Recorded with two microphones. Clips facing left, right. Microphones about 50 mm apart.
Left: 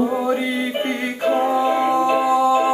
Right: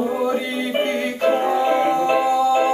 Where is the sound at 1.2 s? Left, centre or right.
Centre.